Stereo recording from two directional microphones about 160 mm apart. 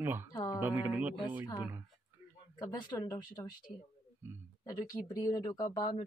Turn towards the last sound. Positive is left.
turn(degrees=25)  # may be behind; listen again after turning